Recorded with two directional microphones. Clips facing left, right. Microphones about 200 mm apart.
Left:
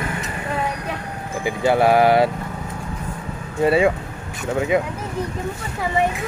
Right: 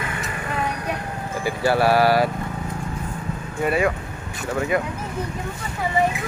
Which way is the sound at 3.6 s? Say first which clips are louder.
Left 5 dB; 25° left (ahead or behind).